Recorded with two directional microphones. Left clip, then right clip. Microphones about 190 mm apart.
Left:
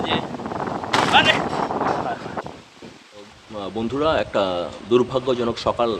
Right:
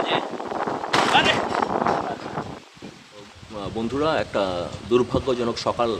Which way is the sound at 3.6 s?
10° left (ahead or behind).